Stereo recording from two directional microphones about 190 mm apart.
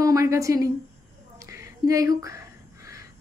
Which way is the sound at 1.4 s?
15° right (ahead or behind).